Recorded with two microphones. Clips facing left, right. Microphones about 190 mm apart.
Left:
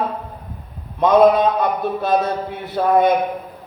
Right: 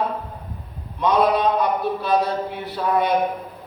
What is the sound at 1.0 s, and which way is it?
A man's voice, 50° left (ahead or behind).